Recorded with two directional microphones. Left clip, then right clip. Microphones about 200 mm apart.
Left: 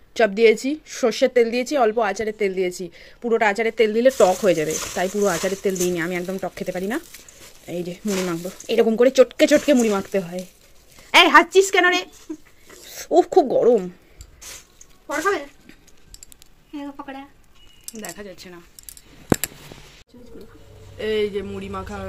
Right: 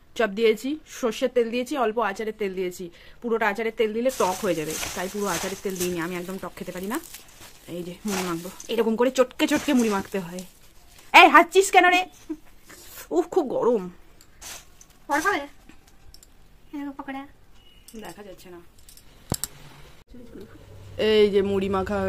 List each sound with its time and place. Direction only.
0.1 s a woman's voice: 15° left (ahead or behind); by 12.1 s centre (ahead or behind)
13.1 s speech: 10° left (ahead or behind)
18.0 s speech: 25° left (ahead or behind)
21.0 s speech: 55° right (ahead or behind)